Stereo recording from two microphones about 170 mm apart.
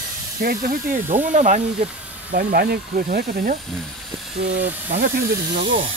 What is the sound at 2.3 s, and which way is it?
Speech, 65° right (ahead or behind).